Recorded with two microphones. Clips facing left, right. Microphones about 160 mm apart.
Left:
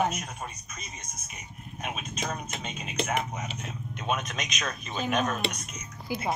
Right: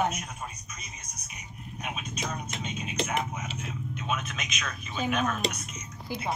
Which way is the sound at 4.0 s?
40° left (ahead or behind).